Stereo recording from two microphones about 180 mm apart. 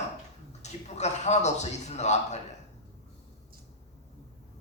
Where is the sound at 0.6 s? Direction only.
40° left (ahead or behind).